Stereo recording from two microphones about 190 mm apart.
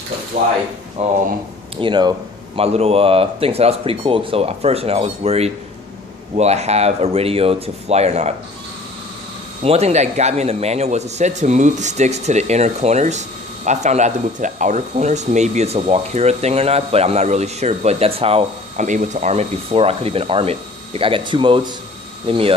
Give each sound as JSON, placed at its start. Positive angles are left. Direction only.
{"t": 1.0, "sound": "speech", "side_deg": -35}
{"t": 1.8, "sound": "speech", "side_deg": -25}
{"t": 9.6, "sound": "speech", "side_deg": -35}